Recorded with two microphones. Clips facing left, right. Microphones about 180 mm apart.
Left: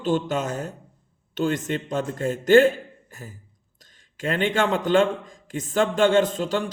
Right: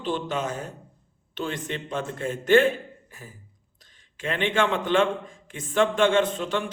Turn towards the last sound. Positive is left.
turn(degrees=35)  # may be behind; listen again after turning